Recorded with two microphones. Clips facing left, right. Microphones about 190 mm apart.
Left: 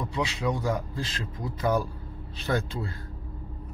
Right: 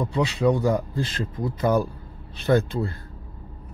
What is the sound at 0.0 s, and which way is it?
A man's voice, 55° right (ahead or behind).